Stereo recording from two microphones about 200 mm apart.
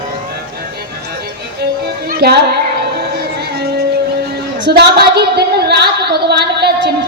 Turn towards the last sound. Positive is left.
turn(degrees=-55)  # may be behind; listen again after turning